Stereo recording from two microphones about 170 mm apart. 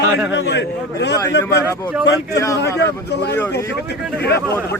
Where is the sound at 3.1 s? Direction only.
75° left (ahead or behind).